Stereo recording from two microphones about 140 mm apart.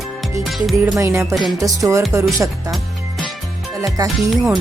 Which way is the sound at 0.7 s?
25° right (ahead or behind).